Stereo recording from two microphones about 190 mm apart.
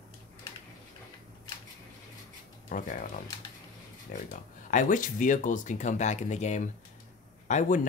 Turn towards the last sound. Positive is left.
turn(degrees=40)  # may be behind; listen again after turning